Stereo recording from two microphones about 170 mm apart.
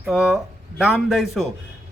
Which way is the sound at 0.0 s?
5° right (ahead or behind).